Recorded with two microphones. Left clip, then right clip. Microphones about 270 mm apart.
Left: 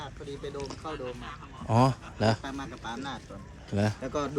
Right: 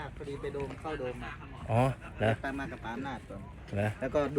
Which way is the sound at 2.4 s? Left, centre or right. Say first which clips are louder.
Even; centre.